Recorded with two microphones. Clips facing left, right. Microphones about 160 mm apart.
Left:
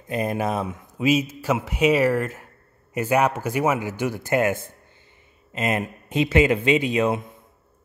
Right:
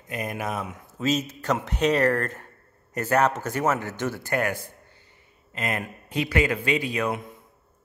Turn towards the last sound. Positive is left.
turn(degrees=25)  # may be behind; listen again after turning